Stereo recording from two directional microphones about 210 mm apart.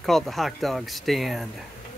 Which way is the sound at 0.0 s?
Centre (ahead or behind).